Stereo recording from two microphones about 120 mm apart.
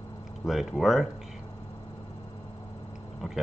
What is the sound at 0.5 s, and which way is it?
Speech, centre (ahead or behind).